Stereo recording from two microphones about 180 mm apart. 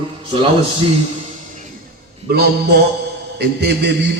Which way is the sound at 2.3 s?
60° right (ahead or behind).